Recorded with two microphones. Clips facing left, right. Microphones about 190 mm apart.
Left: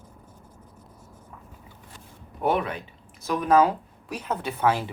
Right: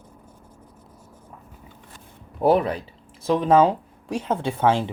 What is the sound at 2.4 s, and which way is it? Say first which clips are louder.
Speech: right 6 dB; 35° right (ahead or behind).